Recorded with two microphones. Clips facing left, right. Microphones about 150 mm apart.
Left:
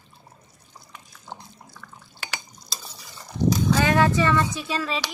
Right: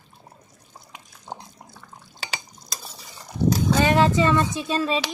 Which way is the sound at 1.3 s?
25° right (ahead or behind).